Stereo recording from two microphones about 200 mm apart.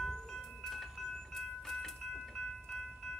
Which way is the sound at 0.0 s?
Centre (ahead or behind).